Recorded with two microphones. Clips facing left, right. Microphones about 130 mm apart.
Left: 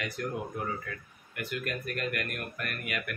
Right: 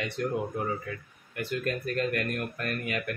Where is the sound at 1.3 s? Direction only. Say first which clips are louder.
Right 4 dB; 30° right (ahead or behind).